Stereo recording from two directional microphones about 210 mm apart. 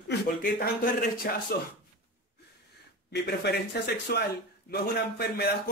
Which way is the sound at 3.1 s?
50° left (ahead or behind).